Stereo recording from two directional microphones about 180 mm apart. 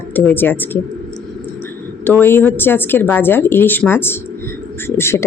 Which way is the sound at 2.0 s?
10° left (ahead or behind).